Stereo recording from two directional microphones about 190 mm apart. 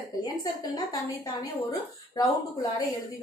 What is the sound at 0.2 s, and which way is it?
A woman's voice, 20° left (ahead or behind).